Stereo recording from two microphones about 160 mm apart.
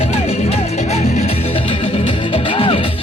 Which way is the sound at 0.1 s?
40° left (ahead or behind).